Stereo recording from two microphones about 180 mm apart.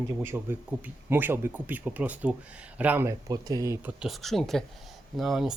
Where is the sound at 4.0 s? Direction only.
Centre (ahead or behind).